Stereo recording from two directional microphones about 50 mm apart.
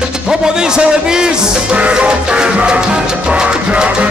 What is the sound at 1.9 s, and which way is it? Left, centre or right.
Music, centre.